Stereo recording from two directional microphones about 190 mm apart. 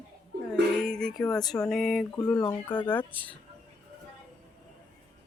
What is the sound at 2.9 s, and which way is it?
Speech, 10° left (ahead or behind).